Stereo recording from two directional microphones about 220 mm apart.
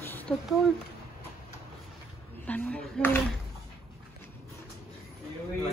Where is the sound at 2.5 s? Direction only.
5° left (ahead or behind).